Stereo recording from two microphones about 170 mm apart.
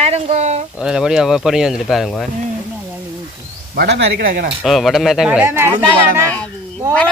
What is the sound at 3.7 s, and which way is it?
Speech, 80° right.